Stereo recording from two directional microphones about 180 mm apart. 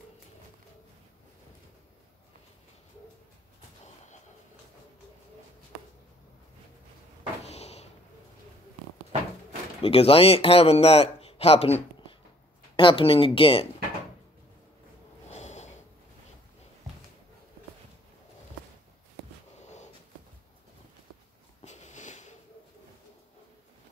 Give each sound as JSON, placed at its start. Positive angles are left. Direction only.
{"t": 7.4, "sound": "door", "side_deg": 35}
{"t": 9.8, "sound": "speech", "side_deg": 30}
{"t": 15.2, "sound": "snort", "side_deg": 40}
{"t": 21.6, "sound": "sniff", "side_deg": 40}